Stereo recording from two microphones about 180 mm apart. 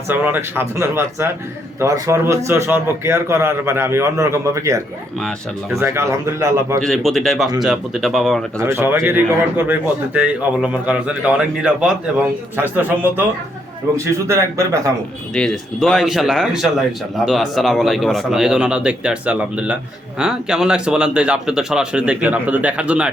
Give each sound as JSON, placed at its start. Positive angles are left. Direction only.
{"t": 0.1, "sound": "a man's voice", "side_deg": -10}
{"t": 6.7, "sound": "speech", "side_deg": 0}
{"t": 8.5, "sound": "a man's voice", "side_deg": -15}
{"t": 15.4, "sound": "speech", "side_deg": 5}